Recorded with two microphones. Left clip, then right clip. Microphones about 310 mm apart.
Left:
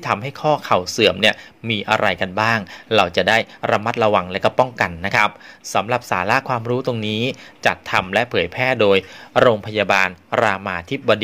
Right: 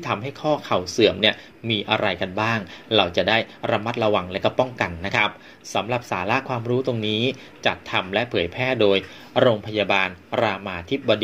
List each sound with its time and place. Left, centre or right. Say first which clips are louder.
0.0 s speech: left 5 dB; left